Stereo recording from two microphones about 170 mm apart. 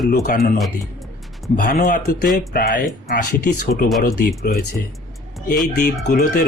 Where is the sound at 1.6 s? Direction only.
50° left (ahead or behind).